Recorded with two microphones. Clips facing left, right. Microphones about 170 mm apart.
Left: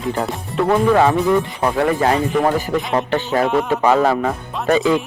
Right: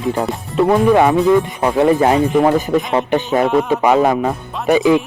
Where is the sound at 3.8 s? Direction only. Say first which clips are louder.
Even; 15° right (ahead or behind).